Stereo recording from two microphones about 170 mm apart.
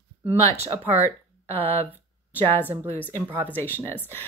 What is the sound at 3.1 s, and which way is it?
Speech, 10° right (ahead or behind).